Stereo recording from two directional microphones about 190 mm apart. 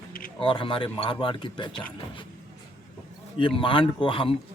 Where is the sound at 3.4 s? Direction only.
25° left (ahead or behind).